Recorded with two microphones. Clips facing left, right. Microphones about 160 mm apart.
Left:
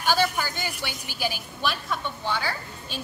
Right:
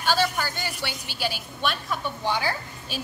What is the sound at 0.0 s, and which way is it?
A woman's voice, 15° left (ahead or behind).